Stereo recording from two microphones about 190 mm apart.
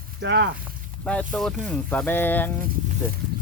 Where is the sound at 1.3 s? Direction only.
Centre (ahead or behind).